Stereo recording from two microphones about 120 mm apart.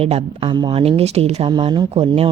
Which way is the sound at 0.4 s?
40° right (ahead or behind).